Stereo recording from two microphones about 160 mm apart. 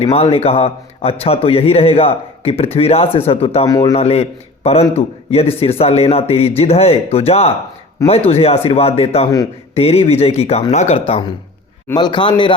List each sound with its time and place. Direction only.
0.0 s a man's voice: 40° left (ahead or behind)
3.7 s a man's voice: 20° left (ahead or behind)
3.9 s a man's voice: 40° left (ahead or behind)